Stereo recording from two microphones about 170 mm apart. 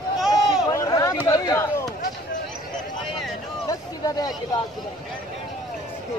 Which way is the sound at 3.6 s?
20° left (ahead or behind).